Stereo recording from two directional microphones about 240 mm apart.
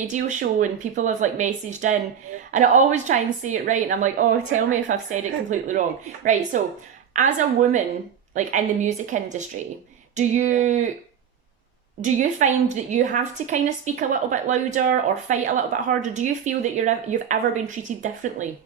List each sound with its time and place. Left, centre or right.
0.1 s a woman's voice: right
12.0 s a woman's voice: right